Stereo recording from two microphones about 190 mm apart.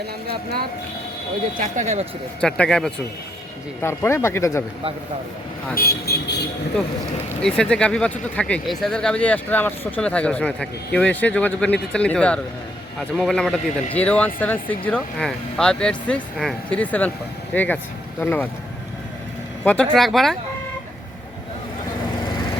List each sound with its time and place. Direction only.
1.5 s speech: 40° right (ahead or behind)
2.4 s speech: 5° left (ahead or behind)
5.7 s speech: 55° left (ahead or behind)
7.4 s speech: 5° left (ahead or behind)
19.6 s speech: 5° left (ahead or behind)